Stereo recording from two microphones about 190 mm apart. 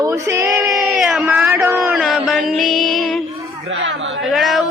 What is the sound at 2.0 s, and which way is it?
Music, 5° right (ahead or behind).